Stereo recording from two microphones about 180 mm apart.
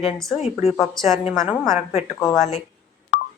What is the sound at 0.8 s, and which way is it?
A woman's voice, centre (ahead or behind).